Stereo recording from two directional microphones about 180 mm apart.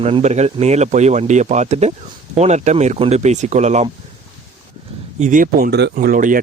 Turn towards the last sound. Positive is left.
turn(degrees=-50)  # may be behind; listen again after turning